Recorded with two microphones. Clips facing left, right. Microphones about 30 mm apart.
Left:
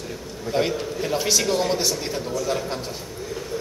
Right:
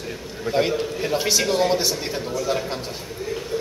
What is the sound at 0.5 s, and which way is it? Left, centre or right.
A man's voice, centre.